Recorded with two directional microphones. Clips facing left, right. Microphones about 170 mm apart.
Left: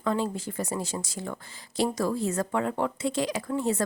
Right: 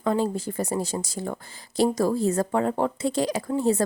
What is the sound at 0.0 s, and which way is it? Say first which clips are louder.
Speech: right 4 dB; 35° right (ahead or behind).